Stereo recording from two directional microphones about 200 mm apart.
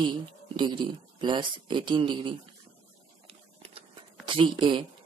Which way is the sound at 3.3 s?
30° right (ahead or behind).